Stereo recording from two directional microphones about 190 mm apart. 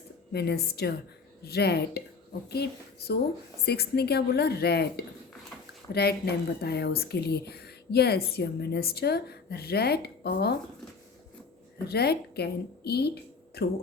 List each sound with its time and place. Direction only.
0.3 s speech: 55° left (ahead or behind)
11.9 s speech: 60° left (ahead or behind)